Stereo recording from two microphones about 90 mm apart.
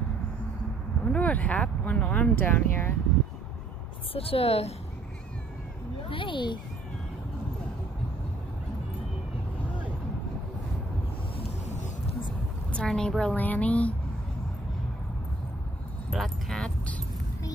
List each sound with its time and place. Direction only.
1.0 s speech: 15° left (ahead or behind)
4.1 s a woman's voice: 90° left
6.0 s speech: 70° left (ahead or behind)
12.7 s a woman's voice: 10° left (ahead or behind)
16.1 s speech: 5° left (ahead or behind)